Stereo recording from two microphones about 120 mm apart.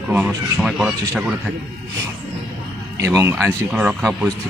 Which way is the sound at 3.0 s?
20° right (ahead or behind).